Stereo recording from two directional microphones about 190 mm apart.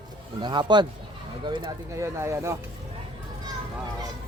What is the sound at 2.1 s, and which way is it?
Speech, 15° right (ahead or behind).